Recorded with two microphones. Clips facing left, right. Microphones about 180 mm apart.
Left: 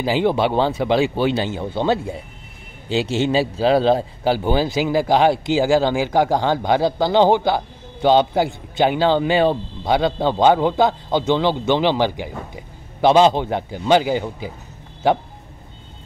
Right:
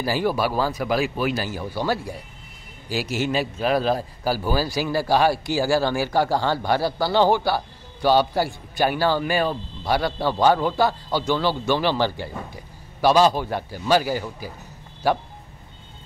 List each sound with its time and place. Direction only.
0.0 s speech: 20° left (ahead or behind)